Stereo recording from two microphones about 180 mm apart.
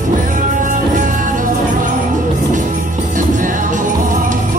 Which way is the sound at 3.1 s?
45° right (ahead or behind).